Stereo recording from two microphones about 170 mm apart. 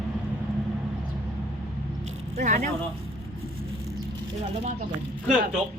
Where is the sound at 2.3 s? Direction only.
50° right (ahead or behind).